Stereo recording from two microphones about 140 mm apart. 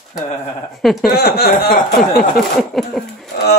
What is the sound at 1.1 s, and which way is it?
Speech, 90° left.